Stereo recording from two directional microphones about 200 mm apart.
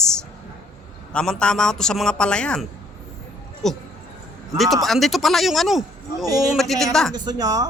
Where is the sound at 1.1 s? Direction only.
5° left (ahead or behind).